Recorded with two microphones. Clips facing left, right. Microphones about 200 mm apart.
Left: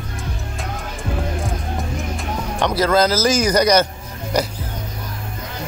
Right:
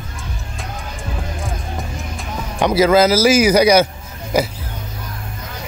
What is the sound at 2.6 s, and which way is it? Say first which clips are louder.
Speech: right 4 dB; 5° right (ahead or behind).